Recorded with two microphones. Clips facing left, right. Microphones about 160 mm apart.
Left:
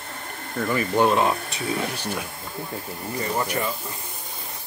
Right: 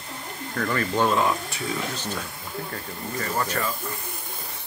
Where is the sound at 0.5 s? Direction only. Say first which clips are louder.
Left 3 dB; 15° left (ahead or behind).